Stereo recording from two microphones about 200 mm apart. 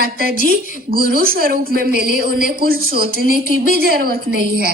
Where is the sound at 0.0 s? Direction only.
50° right (ahead or behind).